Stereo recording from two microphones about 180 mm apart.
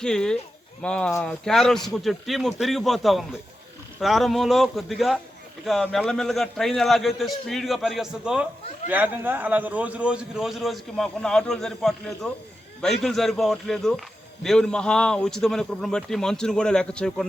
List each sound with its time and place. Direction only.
0.0 s a man's voice: 5° left (ahead or behind)